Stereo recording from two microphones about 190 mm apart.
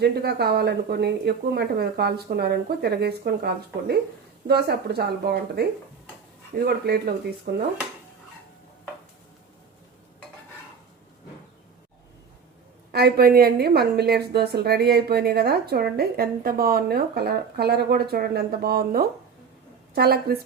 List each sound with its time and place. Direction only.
0.0 s a woman's voice: 60° right (ahead or behind)
6.7 s a woman's voice: 55° right (ahead or behind)
12.9 s a woman's voice: 55° right (ahead or behind)